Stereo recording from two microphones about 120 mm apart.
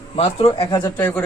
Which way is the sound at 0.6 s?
35° left (ahead or behind).